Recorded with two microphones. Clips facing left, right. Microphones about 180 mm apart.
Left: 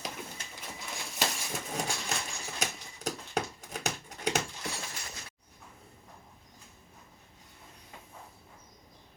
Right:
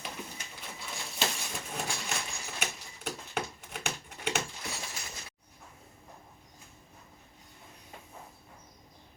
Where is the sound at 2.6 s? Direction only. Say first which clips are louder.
Left 4 dB; 40° left (ahead or behind).